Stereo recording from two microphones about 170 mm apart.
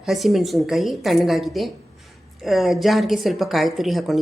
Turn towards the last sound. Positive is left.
turn(degrees=0)  # may be behind; listen again after turning